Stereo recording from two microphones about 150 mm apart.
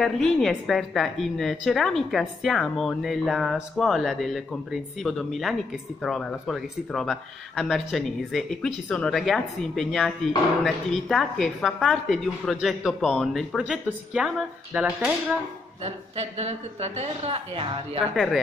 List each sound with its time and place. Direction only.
0.0 s speech: 5° left (ahead or behind)
15.8 s speech: 45° right (ahead or behind)
18.1 s speech: centre (ahead or behind)